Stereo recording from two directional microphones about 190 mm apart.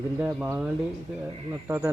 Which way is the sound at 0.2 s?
5° right (ahead or behind).